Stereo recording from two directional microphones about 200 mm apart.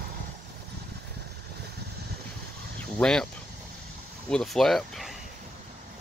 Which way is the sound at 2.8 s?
5° left (ahead or behind).